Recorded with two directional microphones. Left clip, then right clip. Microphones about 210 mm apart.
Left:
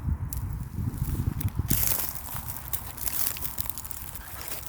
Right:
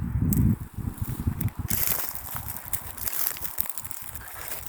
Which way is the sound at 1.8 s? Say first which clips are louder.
Right 3 dB; 10° left (ahead or behind).